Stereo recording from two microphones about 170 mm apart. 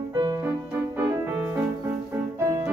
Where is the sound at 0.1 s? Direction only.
25° right (ahead or behind).